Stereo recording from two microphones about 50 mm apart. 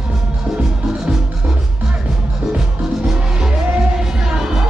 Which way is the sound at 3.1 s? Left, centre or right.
Centre.